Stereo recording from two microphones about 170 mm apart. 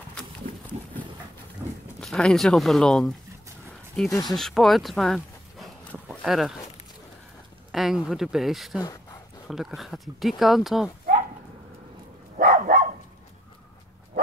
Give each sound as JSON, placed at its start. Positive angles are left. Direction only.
{"t": 2.0, "sound": "speech", "side_deg": 5}
{"t": 4.1, "sound": "speech", "side_deg": 25}
{"t": 4.4, "sound": "a sound", "side_deg": 0}
{"t": 7.7, "sound": "speech", "side_deg": 0}
{"t": 8.7, "sound": "a sound", "side_deg": 20}
{"t": 9.5, "sound": "speech", "side_deg": 0}
{"t": 12.4, "sound": "dog", "side_deg": -55}